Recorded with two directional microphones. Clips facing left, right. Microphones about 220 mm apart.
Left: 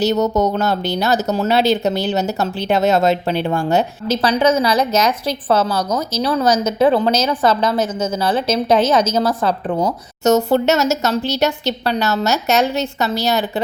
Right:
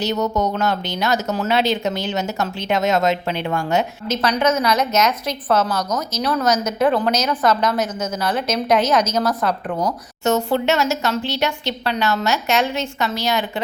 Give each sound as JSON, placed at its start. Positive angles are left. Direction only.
{"t": 0.0, "sound": "speech", "side_deg": 35}
{"t": 10.2, "sound": "speech", "side_deg": 40}